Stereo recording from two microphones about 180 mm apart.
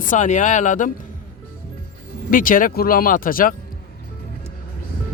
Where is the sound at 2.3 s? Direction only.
50° left (ahead or behind).